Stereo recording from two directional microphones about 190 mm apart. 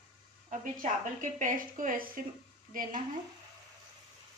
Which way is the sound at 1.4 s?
45° right (ahead or behind).